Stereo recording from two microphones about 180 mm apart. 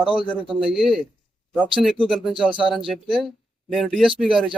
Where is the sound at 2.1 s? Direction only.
Centre (ahead or behind).